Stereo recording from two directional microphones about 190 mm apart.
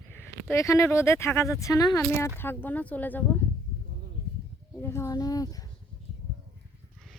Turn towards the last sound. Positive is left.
turn(degrees=20)  # may be behind; listen again after turning